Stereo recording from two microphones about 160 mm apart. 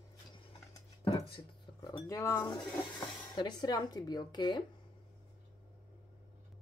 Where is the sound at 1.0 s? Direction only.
35° left (ahead or behind).